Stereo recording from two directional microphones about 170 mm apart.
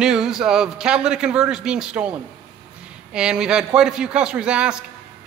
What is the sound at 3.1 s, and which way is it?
Speech, 5° right (ahead or behind).